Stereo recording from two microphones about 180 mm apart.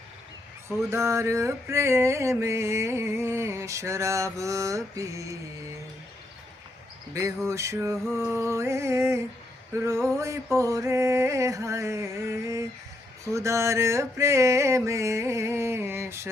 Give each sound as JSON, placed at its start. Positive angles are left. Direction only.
{"t": 0.9, "sound": "music", "side_deg": -15}
{"t": 7.1, "sound": "music", "side_deg": -15}